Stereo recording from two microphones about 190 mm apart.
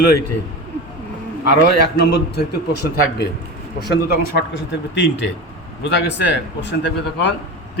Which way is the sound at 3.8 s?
60° left (ahead or behind).